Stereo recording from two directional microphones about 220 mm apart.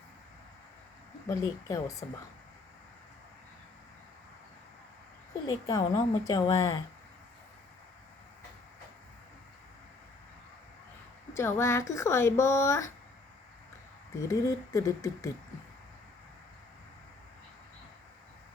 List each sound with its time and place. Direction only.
1.3 s speech: 15° left (ahead or behind)
5.5 s speech: 20° left (ahead or behind)
11.3 s speech: 10° left (ahead or behind)
14.2 s speech: 15° left (ahead or behind)